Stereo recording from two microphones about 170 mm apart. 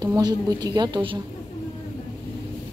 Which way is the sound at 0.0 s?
25° right (ahead or behind).